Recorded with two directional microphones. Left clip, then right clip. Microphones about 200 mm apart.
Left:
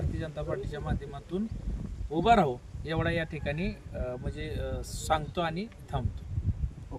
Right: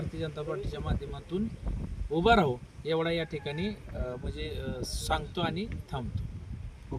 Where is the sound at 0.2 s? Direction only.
10° left (ahead or behind).